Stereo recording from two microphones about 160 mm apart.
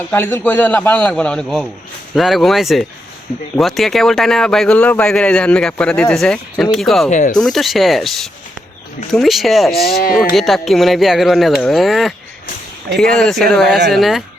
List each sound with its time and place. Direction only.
0.1 s a man's voice: 15° left (ahead or behind)
7.1 s speech: 50° left (ahead or behind)
7.3 s speech: 5° left (ahead or behind)
9.8 s speech: 70° left (ahead or behind)
10.3 s speech: centre (ahead or behind)